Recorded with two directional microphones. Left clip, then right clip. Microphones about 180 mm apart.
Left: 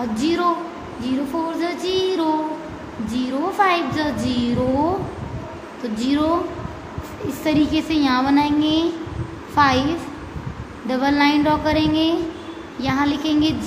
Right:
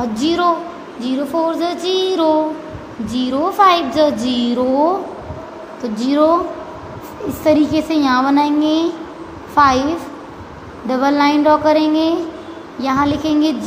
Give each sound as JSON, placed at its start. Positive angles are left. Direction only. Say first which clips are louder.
{"t": 0.0, "sound": "a woman's voice", "louder": "right 4 dB", "side_deg": -15}
{"t": 1.0, "sound": "child singing", "louder": "right 6 dB", "side_deg": -20}
{"t": 3.1, "sound": "a woman's voice", "louder": "right 5 dB", "side_deg": -15}